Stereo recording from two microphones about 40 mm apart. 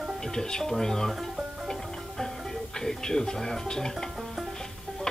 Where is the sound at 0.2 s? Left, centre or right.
Centre.